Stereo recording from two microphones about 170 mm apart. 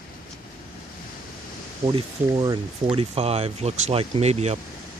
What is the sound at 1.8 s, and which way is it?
Speech, 30° right (ahead or behind).